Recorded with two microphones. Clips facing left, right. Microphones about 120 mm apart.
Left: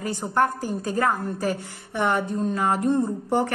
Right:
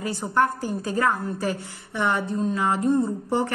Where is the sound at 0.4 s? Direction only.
45° left (ahead or behind).